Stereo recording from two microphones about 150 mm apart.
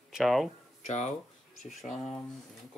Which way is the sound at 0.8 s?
50° left (ahead or behind).